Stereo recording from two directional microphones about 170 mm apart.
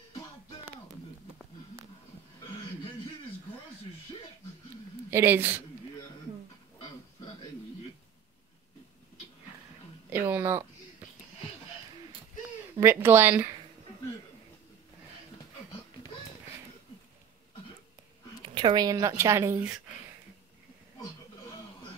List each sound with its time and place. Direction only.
5.1 s speech: 10° right (ahead or behind)
10.0 s a sound: 10° right (ahead or behind)
12.7 s speech: 15° right (ahead or behind)
18.5 s a woman's voice: 30° right (ahead or behind)